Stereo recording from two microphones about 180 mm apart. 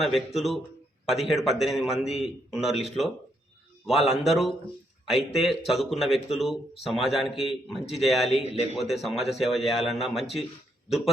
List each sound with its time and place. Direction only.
0.3 s a man's voice: centre (ahead or behind)
8.4 s a man's voice: 35° left (ahead or behind)
8.8 s a man's voice: centre (ahead or behind)